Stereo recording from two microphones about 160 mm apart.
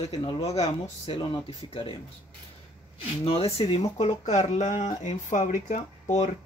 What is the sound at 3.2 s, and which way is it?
Speech, 35° left (ahead or behind).